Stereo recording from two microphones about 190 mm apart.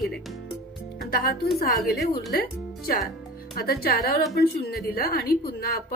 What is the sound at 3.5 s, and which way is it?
A woman's voice, 55° left (ahead or behind).